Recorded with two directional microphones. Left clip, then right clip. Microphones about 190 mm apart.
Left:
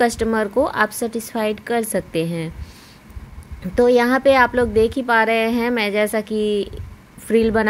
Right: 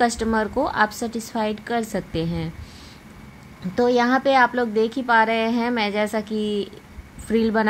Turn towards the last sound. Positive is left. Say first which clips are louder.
# left 4 dB
turn(degrees=30)  # may be behind; listen again after turning